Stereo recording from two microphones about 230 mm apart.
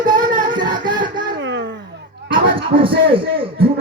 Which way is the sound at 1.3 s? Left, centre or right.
Right.